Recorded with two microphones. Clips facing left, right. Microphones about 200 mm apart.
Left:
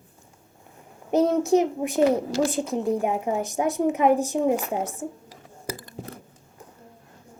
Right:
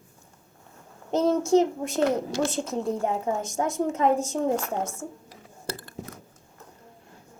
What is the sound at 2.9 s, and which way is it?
A woman's voice, 15° left (ahead or behind).